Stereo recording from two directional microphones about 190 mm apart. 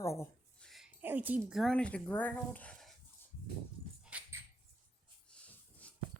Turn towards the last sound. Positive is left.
turn(degrees=5)  # may be behind; listen again after turning